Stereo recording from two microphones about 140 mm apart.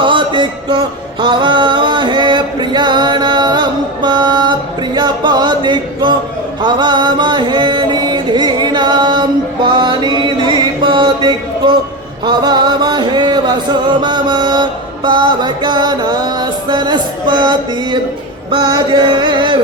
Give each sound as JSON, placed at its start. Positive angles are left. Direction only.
{"t": 0.0, "sound": "a sound", "side_deg": -35}
{"t": 1.2, "sound": "music", "side_deg": -35}
{"t": 6.6, "sound": "chant", "side_deg": -30}
{"t": 12.2, "sound": "music", "side_deg": -30}